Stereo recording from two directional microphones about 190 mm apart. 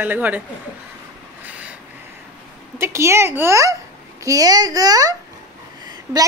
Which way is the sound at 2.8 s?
15° right (ahead or behind).